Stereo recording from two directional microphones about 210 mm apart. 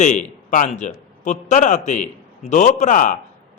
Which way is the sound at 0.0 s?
35° left (ahead or behind).